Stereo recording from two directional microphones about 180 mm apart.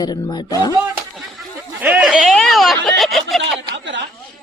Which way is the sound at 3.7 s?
85° right.